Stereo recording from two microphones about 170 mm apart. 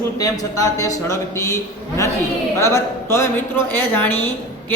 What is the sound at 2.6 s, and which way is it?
Speech, 15° left (ahead or behind).